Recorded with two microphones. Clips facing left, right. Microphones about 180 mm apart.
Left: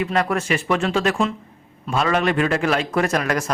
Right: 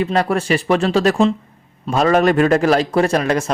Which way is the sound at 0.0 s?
30° right (ahead or behind).